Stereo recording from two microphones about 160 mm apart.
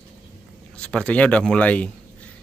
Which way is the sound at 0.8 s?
5° left (ahead or behind).